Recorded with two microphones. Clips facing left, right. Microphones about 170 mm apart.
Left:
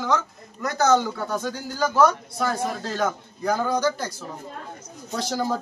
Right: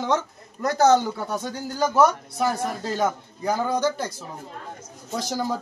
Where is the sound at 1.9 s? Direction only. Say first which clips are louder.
Even; 15° right (ahead or behind).